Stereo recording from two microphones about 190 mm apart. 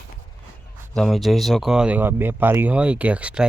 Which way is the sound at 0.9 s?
Centre (ahead or behind).